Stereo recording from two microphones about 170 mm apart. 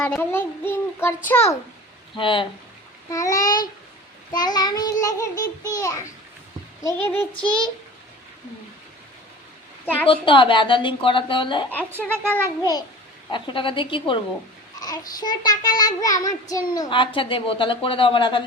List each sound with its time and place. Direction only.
0.1 s a child's voice: 10° left (ahead or behind)
2.1 s child singing: 30° left (ahead or behind)
3.1 s child singing: 20° left (ahead or behind)
6.8 s a child's voice: 15° left (ahead or behind)
9.8 s a woman's voice: 10° left (ahead or behind)
10.1 s child singing: 30° left (ahead or behind)
11.7 s a child's voice: 10° left (ahead or behind)
13.3 s a woman's voice: 30° left (ahead or behind)
14.8 s child singing: 20° left (ahead or behind)